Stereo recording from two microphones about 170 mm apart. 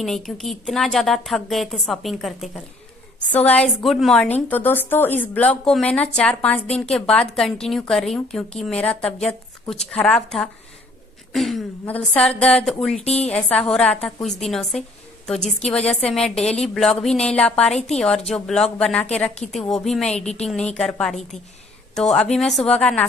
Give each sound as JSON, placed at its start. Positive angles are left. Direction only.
{"t": 0.0, "sound": "a woman's voice", "side_deg": 0}
{"t": 13.0, "sound": "a woman's voice", "side_deg": 40}
{"t": 13.3, "sound": "a woman's voice", "side_deg": 5}